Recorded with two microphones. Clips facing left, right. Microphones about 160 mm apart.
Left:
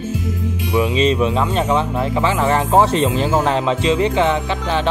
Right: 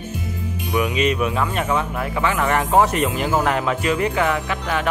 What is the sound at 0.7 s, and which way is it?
Speech, 30° left (ahead or behind).